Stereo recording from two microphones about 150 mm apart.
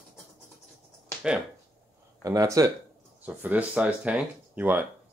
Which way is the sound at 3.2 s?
10° right (ahead or behind).